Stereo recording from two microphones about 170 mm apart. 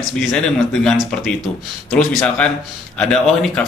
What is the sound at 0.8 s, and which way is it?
Speech, centre (ahead or behind).